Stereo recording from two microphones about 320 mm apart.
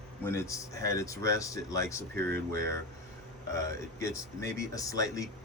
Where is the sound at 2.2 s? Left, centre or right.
Right.